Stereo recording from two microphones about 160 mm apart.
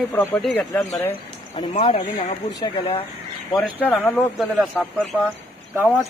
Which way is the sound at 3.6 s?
10° left (ahead or behind).